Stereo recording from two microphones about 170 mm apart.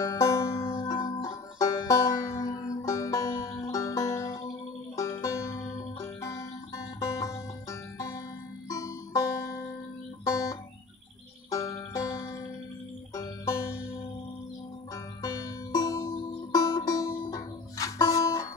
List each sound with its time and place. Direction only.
0.0 s music: 20° left (ahead or behind)
0.5 s music: 30° left (ahead or behind)
8.6 s music: 20° left (ahead or behind)
15.2 s music: 20° left (ahead or behind)